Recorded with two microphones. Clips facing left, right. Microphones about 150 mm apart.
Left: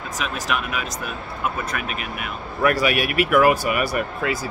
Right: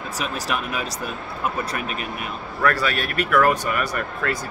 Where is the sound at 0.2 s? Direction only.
35° right (ahead or behind).